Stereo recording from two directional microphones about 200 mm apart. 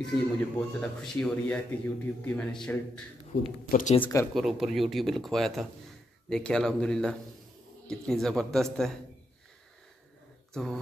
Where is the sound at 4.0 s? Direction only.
15° left (ahead or behind).